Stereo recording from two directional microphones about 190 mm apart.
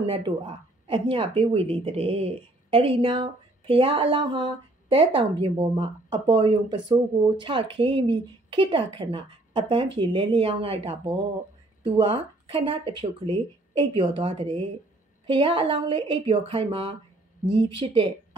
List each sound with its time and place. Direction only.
0.0 s speech: 25° right (ahead or behind)